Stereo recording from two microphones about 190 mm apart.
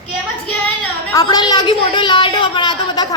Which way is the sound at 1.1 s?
20° left (ahead or behind).